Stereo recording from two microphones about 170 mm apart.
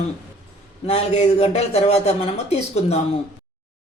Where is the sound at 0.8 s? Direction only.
40° left (ahead or behind).